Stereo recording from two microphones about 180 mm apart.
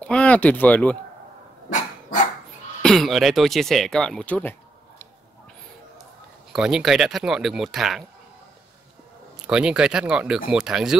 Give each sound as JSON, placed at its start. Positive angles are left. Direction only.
{"t": 0.0, "sound": "speech", "side_deg": 5}
{"t": 1.7, "sound": "dog", "side_deg": 45}
{"t": 2.8, "sound": "speech", "side_deg": 0}
{"t": 6.5, "sound": "speech", "side_deg": 0}
{"t": 9.4, "sound": "speech", "side_deg": -5}